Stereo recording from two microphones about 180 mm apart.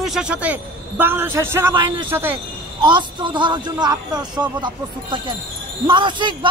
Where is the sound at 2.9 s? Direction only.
25° right (ahead or behind).